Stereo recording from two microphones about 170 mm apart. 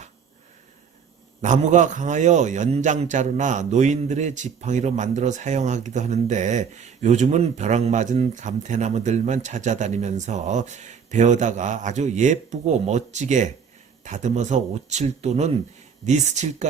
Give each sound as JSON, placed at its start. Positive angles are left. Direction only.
{"t": 1.4, "sound": "a man's voice", "side_deg": -45}